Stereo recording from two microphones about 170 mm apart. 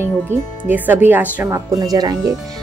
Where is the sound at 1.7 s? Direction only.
20° right (ahead or behind).